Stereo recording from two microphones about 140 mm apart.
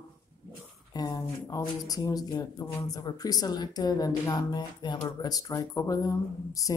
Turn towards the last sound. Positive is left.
turn(degrees=25)  # may be behind; listen again after turning